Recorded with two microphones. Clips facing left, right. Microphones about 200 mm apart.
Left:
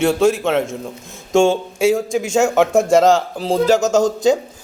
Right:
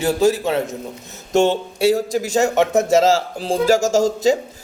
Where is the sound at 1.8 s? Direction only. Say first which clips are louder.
Even; 35° right (ahead or behind).